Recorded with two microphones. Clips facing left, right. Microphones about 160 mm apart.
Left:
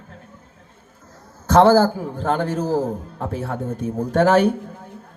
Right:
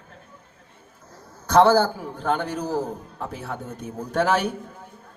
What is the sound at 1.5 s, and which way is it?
Speech, 45° left (ahead or behind).